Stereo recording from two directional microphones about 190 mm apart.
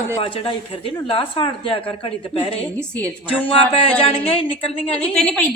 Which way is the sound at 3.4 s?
30° left (ahead or behind).